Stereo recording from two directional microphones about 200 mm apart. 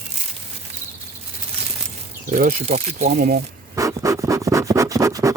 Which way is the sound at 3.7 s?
15° right (ahead or behind).